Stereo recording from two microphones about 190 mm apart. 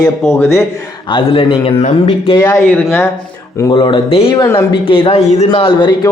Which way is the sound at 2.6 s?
10° left (ahead or behind).